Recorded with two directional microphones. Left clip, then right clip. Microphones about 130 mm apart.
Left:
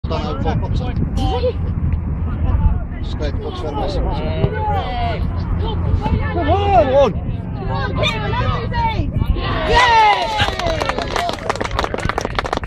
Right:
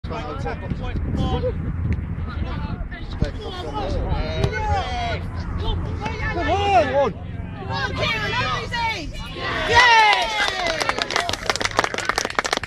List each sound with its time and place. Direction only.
4.2 s speech: 40° right (ahead or behind)
6.0 s speech: 30° right (ahead or behind)
6.5 s speech: 20° left (ahead or behind)
6.9 s speech: 40° left (ahead or behind)
8.0 s speech: 5° left (ahead or behind)
9.4 s speech: 45° right (ahead or behind)
9.8 s run: 15° left (ahead or behind)